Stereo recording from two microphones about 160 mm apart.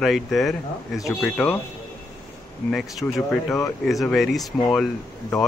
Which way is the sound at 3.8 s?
Centre (ahead or behind).